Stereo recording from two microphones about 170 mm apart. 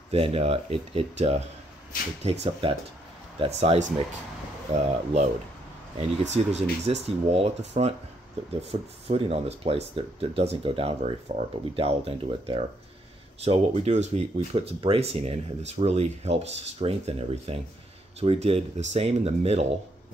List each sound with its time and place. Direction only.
0.1 s speech: 35° right (ahead or behind)
2.6 s speech: 35° right (ahead or behind)